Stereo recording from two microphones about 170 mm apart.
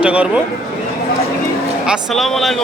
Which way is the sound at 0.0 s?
5° right (ahead or behind).